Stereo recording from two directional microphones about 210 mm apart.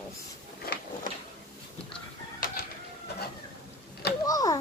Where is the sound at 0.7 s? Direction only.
45° left (ahead or behind).